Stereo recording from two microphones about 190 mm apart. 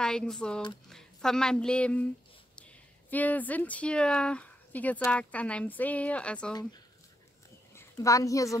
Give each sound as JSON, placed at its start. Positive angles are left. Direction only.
{"t": 0.0, "sound": "speech", "side_deg": 5}
{"t": 3.1, "sound": "speech", "side_deg": 10}
{"t": 7.7, "sound": "a woman's voice", "side_deg": 15}